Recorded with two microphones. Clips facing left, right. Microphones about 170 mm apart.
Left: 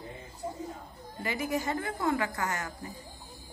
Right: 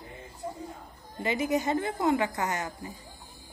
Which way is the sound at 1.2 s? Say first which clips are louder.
Right 4 dB; 20° right (ahead or behind).